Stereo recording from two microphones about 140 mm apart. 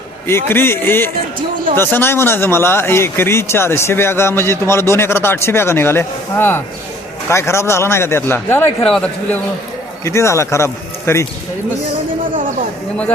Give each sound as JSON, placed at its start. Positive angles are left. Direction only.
{"t": 0.3, "sound": "speech", "side_deg": 15}
{"t": 8.8, "sound": "a man's voice", "side_deg": 5}
{"t": 10.0, "sound": "speech", "side_deg": 20}